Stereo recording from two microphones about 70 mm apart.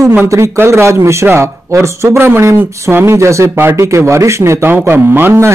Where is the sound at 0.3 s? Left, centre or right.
Right.